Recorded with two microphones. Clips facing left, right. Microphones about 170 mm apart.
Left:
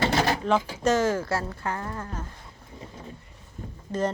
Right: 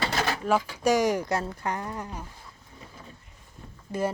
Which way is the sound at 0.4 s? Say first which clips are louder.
Even; 10° right (ahead or behind).